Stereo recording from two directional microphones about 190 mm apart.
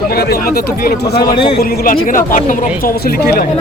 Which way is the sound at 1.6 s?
55° left (ahead or behind).